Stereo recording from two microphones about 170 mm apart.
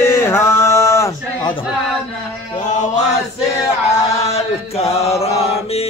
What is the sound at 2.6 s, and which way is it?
Chant, 45° left (ahead or behind).